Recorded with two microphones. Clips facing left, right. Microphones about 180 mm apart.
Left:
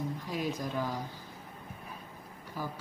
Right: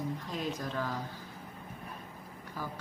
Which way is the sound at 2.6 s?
10° left (ahead or behind).